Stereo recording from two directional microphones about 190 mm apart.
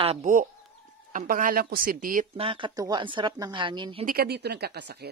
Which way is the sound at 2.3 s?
25° right (ahead or behind).